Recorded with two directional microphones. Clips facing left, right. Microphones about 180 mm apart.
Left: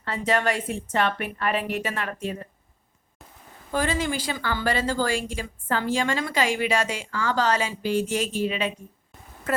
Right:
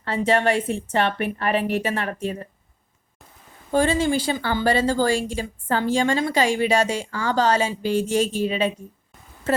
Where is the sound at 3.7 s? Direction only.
30° right (ahead or behind).